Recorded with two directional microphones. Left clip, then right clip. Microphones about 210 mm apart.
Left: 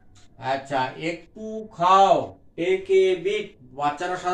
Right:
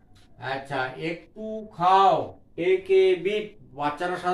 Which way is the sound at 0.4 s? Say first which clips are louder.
Left 4 dB; 10° right (ahead or behind).